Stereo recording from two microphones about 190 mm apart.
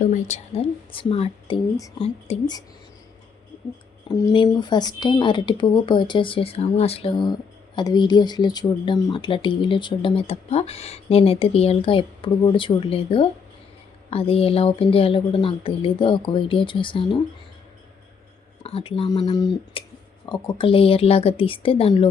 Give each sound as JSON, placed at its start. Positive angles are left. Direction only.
{"t": 0.0, "sound": "speech", "side_deg": 40}
{"t": 2.0, "sound": "speech", "side_deg": 35}
{"t": 4.1, "sound": "speech", "side_deg": 20}
{"t": 18.6, "sound": "speech", "side_deg": 30}